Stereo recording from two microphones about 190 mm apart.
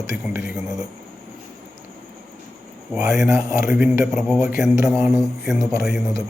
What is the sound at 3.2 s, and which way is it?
A man's voice, 15° right (ahead or behind).